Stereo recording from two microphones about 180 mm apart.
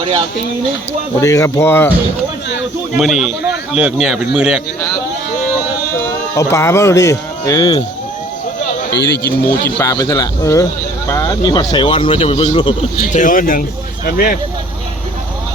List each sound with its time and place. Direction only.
1.2 s speech: 15° left (ahead or behind)
3.0 s speech: centre (ahead or behind)
6.3 s speech: 15° left (ahead or behind)
8.9 s speech: 65° left (ahead or behind)
9.6 s speech: 15° left (ahead or behind); by 12.7 s 30° left (ahead or behind)
13.1 s speech: 45° left (ahead or behind)